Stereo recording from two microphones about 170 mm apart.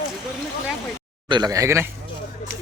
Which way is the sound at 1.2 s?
25° right (ahead or behind).